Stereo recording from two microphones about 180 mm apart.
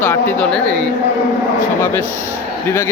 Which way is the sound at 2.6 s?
10° left (ahead or behind).